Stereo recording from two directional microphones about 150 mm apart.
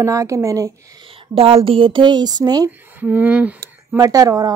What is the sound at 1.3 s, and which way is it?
Speech, 40° right (ahead or behind).